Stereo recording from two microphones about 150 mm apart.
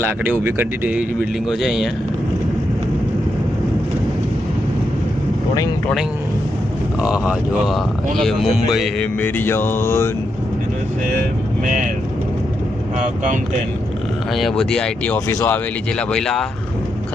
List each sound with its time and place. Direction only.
0.3 s speech: 15° right (ahead or behind)
7.0 s speech: 5° right (ahead or behind)
9.2 s mantra: 15° left (ahead or behind)
11.6 s speech: 60° right (ahead or behind)
13.0 s speech: 60° right (ahead or behind)
14.3 s speech: centre (ahead or behind)